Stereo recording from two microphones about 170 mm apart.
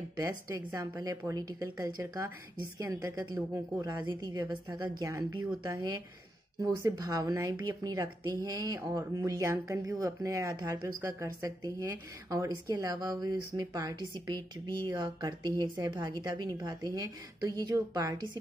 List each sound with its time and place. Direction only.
0.2 s speech: 20° right (ahead or behind)